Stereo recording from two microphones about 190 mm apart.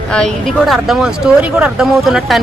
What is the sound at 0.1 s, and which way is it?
Speech, 5° left (ahead or behind).